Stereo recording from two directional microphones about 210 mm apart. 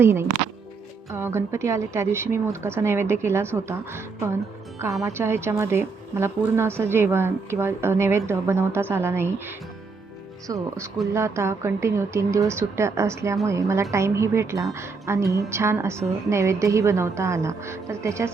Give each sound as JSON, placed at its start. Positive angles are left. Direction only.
{"t": 0.0, "sound": "a woman's voice", "side_deg": -10}